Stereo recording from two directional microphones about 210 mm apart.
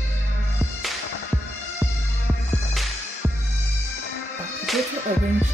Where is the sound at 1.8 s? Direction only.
Centre (ahead or behind).